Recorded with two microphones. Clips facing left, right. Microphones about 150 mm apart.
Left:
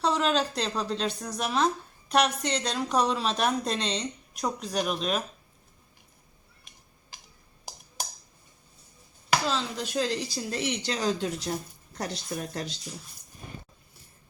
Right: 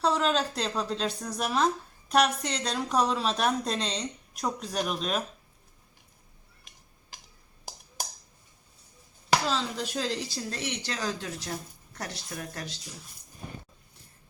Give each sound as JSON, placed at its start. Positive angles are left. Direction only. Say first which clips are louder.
{"t": 0.0, "sound": "a woman's voice", "louder": "even", "side_deg": 0}
{"t": 9.3, "sound": "a woman's voice", "louder": "even", "side_deg": 0}
{"t": 10.5, "sound": "speech", "louder": "left 5 dB", "side_deg": 15}
{"t": 10.9, "sound": "speech", "louder": "left 5 dB", "side_deg": 25}